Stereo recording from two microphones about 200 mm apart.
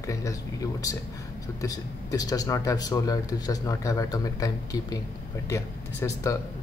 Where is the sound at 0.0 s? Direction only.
15° left (ahead or behind).